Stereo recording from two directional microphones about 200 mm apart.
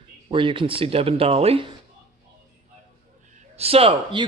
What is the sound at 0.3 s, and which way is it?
A man's voice, 25° right (ahead or behind).